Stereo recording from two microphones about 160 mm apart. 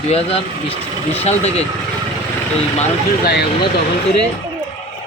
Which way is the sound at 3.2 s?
90° left.